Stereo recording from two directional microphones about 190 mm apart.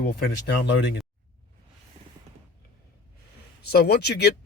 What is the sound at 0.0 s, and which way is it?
Speech, 60° left (ahead or behind).